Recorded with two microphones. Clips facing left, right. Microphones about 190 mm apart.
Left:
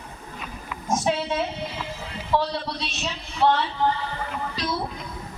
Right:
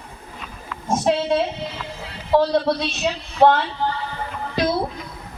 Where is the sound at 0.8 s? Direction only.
30° right (ahead or behind).